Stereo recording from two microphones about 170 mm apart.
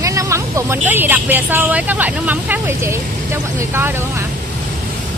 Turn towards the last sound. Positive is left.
turn(degrees=-15)  # may be behind; listen again after turning